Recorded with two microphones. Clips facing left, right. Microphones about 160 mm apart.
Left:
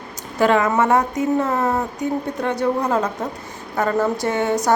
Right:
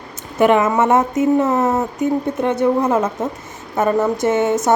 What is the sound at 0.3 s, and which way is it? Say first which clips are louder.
A woman's voice: right 3 dB; 20° right (ahead or behind).